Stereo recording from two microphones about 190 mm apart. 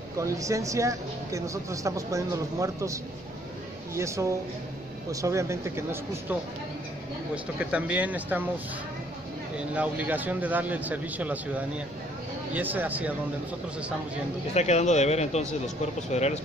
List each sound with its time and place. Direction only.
0.2 s speech: 15° right (ahead or behind)
7.5 s speech: 10° right (ahead or behind)
9.8 s speech: 10° right (ahead or behind)
14.5 s speech: 35° left (ahead or behind)